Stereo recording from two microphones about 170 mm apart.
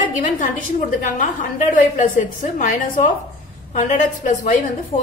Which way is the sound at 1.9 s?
50° left (ahead or behind).